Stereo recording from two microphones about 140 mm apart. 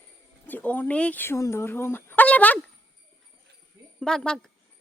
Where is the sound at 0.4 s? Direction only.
10° left (ahead or behind).